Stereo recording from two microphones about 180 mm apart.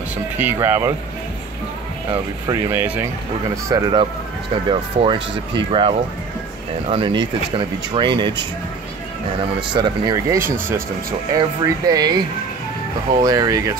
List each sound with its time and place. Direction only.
0.4 s speech: 10° right (ahead or behind)
2.4 s speech: 15° right (ahead or behind)
3.6 s speech: 25° right (ahead or behind)
9.8 s speech: 25° right (ahead or behind)
13.2 s speech: 20° right (ahead or behind)